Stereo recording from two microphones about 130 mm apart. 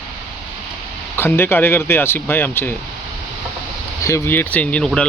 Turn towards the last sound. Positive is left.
turn(degrees=10)  # may be behind; listen again after turning